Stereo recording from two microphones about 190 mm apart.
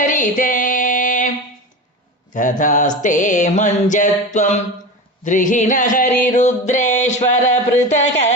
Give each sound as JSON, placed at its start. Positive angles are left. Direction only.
{"t": 0.0, "sound": "female singing", "side_deg": 40}
{"t": 2.3, "sound": "music", "side_deg": 40}